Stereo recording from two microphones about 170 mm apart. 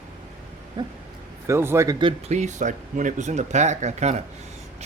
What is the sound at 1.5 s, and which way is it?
Speech, 15° right (ahead or behind).